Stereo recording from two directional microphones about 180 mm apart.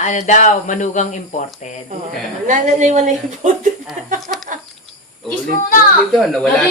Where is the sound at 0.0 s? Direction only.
40° left (ahead or behind).